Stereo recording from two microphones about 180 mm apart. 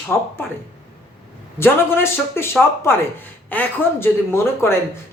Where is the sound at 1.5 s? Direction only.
15° left (ahead or behind).